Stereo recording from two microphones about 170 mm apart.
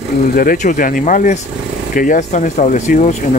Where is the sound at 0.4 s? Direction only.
55° left (ahead or behind).